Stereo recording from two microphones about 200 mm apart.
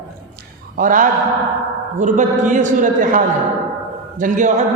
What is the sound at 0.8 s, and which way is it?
A man's voice, 40° right (ahead or behind).